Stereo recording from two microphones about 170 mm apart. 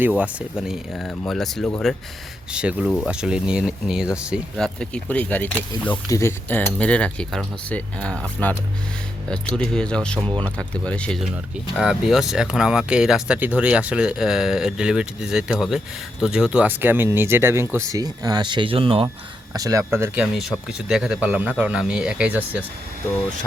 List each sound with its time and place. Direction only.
0.0 s speech: 10° right (ahead or behind)
10.2 s speech: 30° right (ahead or behind)
10.6 s speech: 5° left (ahead or behind); by 19.0 s 30° right (ahead or behind)
19.5 s speech: 20° right (ahead or behind)
20.2 s speech: centre (ahead or behind)